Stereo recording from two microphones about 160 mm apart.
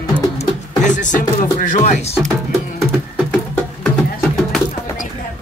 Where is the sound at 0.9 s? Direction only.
50° left (ahead or behind).